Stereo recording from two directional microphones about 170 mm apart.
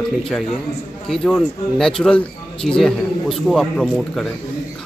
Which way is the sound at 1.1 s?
5° left (ahead or behind).